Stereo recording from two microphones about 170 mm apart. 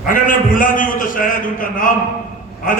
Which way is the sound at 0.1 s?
55° left (ahead or behind).